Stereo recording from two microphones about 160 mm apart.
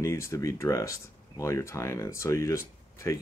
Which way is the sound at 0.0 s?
20° left (ahead or behind).